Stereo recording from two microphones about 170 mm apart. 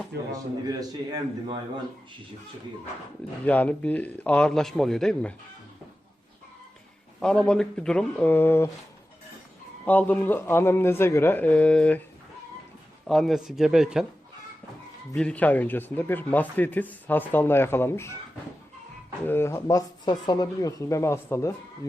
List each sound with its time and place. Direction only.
0.1 s speech: 70° right (ahead or behind)
0.7 s a man's voice: 20° right (ahead or behind)
3.4 s speech: 10° left (ahead or behind)
7.2 s speech: 5° left (ahead or behind)
9.8 s speech: 10° left (ahead or behind)
13.1 s speech: centre (ahead or behind)
15.1 s speech: 5° left (ahead or behind)
19.2 s speech: 15° left (ahead or behind)